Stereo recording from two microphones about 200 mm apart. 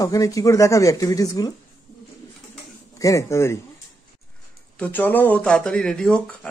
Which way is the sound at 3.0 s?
15° left (ahead or behind).